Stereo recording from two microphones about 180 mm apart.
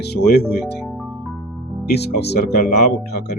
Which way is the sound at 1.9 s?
65° left (ahead or behind).